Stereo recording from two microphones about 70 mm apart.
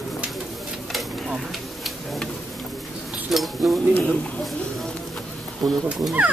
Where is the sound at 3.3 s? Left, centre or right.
Centre.